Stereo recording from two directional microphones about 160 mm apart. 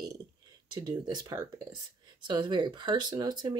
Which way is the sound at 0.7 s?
25° right (ahead or behind).